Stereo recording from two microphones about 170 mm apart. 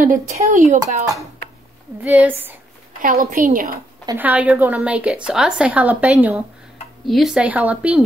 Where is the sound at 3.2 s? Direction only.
50° right (ahead or behind).